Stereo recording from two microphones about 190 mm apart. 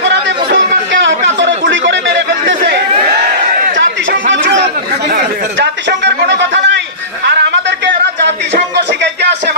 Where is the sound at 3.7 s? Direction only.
75° right (ahead or behind).